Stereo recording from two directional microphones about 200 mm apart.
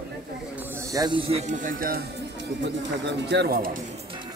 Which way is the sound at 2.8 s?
60° right (ahead or behind).